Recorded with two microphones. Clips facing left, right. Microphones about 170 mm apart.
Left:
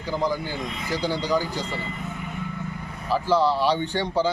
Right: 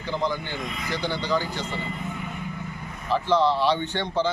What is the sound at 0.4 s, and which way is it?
Speech, 40° left (ahead or behind).